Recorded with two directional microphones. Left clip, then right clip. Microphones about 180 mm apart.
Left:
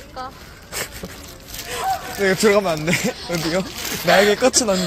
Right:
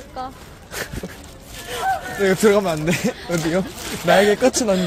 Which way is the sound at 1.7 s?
20° right (ahead or behind).